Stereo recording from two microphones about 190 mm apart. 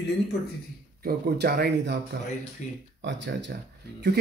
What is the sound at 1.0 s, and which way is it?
Speech, 55° right (ahead or behind).